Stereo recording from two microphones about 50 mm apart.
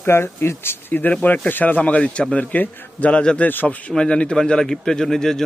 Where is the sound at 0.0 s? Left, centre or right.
Left.